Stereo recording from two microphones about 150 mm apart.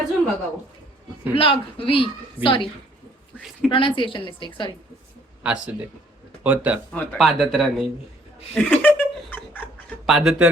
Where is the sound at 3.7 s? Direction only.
35° left (ahead or behind).